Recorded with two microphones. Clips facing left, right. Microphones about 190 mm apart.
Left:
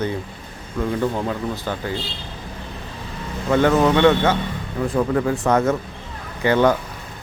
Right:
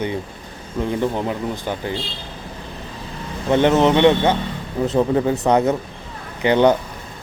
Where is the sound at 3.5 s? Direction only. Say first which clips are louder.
Right 1 dB; 20° right (ahead or behind).